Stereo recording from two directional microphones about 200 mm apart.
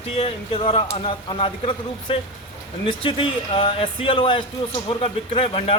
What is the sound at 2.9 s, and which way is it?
A man's voice, 25° left (ahead or behind).